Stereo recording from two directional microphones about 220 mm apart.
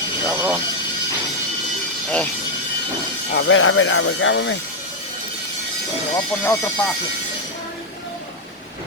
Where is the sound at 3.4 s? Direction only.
65° left (ahead or behind).